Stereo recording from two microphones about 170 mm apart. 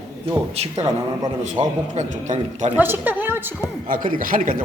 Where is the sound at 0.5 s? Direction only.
40° right (ahead or behind).